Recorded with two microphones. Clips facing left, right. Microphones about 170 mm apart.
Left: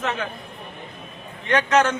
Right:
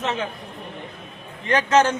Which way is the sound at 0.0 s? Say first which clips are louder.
Right 1 dB; 25° right (ahead or behind).